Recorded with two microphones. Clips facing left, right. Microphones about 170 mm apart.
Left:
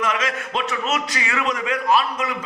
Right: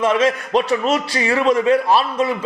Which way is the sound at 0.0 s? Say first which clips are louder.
Right 8 dB; 30° right (ahead or behind).